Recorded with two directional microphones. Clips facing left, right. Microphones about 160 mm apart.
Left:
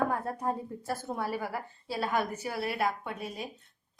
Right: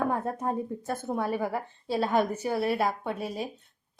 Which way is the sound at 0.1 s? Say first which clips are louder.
Right 3 dB; 20° right (ahead or behind).